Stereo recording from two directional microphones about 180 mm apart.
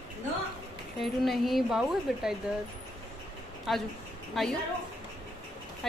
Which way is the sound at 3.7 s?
Centre (ahead or behind).